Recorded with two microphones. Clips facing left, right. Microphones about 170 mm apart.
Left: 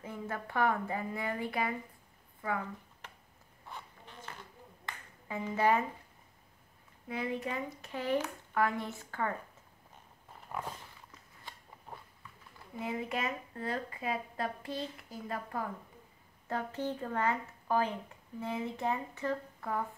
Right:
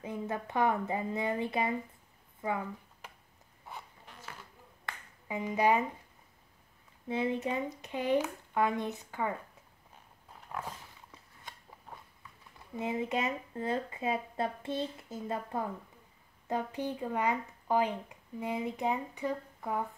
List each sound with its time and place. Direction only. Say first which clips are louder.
0.0 s a woman's voice: right 3 dB; 20° right (ahead or behind)
3.6 s zipper: right 1 dB; 10° right (ahead or behind)
5.3 s speech: right 1 dB; 15° right (ahead or behind)
7.1 s a woman's voice: right 4 dB; 25° right (ahead or behind)
12.7 s a woman's voice: right 3 dB; 20° right (ahead or behind)